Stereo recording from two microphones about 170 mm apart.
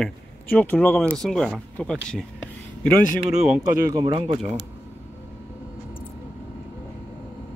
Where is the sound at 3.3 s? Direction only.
5° right (ahead or behind).